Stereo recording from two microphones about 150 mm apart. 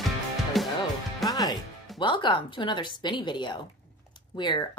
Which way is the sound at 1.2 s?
25° left (ahead or behind).